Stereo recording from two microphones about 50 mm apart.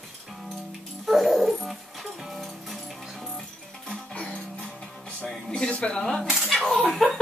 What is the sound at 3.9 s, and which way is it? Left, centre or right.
Music, left.